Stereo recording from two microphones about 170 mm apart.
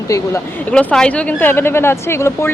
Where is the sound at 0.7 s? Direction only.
5° left (ahead or behind).